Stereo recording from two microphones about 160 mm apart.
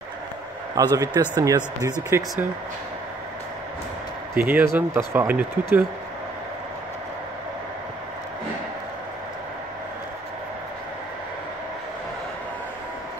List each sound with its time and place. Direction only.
0.9 s speech: 20° right (ahead or behind)
4.4 s speech: 10° right (ahead or behind)